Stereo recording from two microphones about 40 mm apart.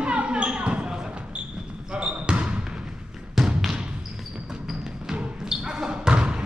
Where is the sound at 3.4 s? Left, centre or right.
Centre.